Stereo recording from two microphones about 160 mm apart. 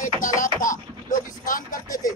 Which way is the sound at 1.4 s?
55° left (ahead or behind).